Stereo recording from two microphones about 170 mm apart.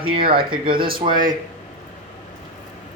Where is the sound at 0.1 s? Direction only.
30° right (ahead or behind).